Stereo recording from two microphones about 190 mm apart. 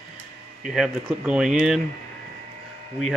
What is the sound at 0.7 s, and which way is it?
Speech, 5° right (ahead or behind).